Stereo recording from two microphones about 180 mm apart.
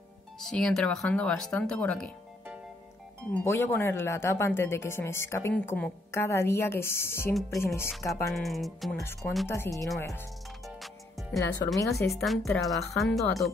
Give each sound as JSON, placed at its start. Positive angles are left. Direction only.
{"t": 0.4, "sound": "speech", "side_deg": 5}
{"t": 3.4, "sound": "speech", "side_deg": 15}
{"t": 8.3, "sound": "speech", "side_deg": 0}
{"t": 9.5, "sound": "speech", "side_deg": 15}
{"t": 10.6, "sound": "music", "side_deg": 0}
{"t": 11.3, "sound": "speech", "side_deg": 20}
{"t": 11.9, "sound": "speech", "side_deg": 0}